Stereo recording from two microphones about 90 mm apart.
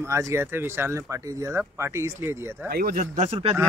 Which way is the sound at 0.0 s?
30° right (ahead or behind).